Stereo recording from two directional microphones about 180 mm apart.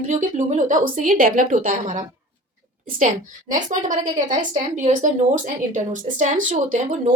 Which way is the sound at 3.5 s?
45° right (ahead or behind).